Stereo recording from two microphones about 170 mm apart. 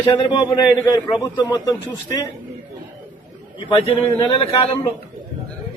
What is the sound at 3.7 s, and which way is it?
A man's voice, 35° left (ahead or behind).